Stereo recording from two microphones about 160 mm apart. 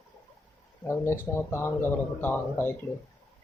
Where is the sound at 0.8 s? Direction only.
15° left (ahead or behind).